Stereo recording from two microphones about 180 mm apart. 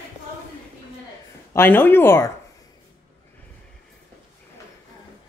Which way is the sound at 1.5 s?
10° left (ahead or behind).